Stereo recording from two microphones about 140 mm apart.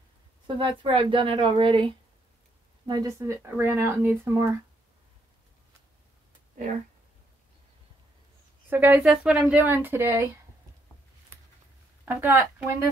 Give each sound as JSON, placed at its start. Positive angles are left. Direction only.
{"t": 0.6, "sound": "a woman's voice", "side_deg": -40}
{"t": 2.9, "sound": "speech", "side_deg": -25}
{"t": 8.6, "sound": "a woman's voice", "side_deg": -15}
{"t": 12.0, "sound": "speech", "side_deg": -15}